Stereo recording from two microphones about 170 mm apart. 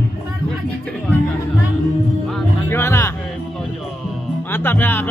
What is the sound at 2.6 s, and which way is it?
Music, 15° left (ahead or behind).